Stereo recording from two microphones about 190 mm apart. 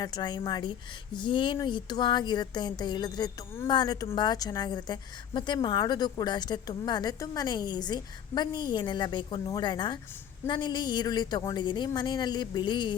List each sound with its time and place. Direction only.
0.0 s a woman's voice: 20° left (ahead or behind)